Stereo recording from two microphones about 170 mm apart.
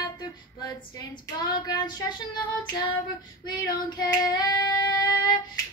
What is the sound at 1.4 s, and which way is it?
Child singing, 25° left (ahead or behind).